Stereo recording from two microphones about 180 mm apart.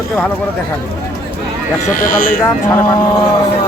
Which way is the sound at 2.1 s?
50° left (ahead or behind).